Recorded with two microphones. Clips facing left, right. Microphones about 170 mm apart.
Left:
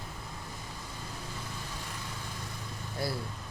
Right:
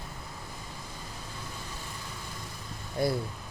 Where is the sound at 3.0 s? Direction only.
20° right (ahead or behind).